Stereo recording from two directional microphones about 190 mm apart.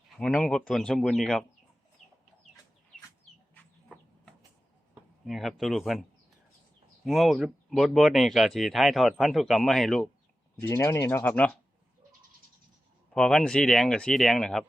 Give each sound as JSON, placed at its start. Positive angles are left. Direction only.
{"t": 0.2, "sound": "speech", "side_deg": 5}
{"t": 3.5, "sound": "chicken", "side_deg": 10}
{"t": 5.2, "sound": "speech", "side_deg": 0}
{"t": 10.6, "sound": "speech", "side_deg": 15}
{"t": 13.1, "sound": "speech", "side_deg": 5}